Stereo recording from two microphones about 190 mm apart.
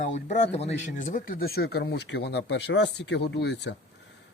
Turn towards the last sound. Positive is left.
turn(degrees=65)  # may be behind; listen again after turning